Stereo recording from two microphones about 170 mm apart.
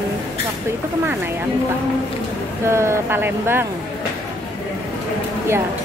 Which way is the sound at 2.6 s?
15° right (ahead or behind).